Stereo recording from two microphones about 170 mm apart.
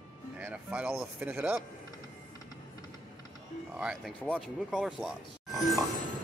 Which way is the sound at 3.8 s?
5° right (ahead or behind).